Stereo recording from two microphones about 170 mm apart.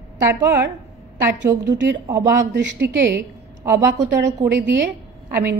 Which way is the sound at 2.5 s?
90° right.